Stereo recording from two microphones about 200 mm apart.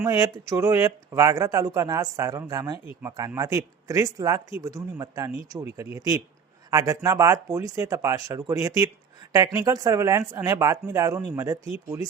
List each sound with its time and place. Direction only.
0.0 s speech: 15° right (ahead or behind)